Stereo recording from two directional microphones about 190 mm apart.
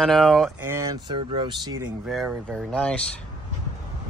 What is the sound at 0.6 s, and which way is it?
Speech, 15° right (ahead or behind).